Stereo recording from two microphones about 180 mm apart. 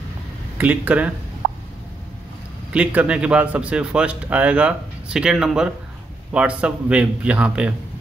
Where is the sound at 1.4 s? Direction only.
80° right.